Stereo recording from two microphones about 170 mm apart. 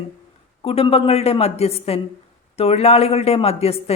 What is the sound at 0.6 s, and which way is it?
Speech, 35° left (ahead or behind).